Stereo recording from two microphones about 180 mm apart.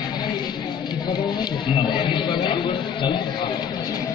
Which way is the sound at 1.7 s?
25° left (ahead or behind).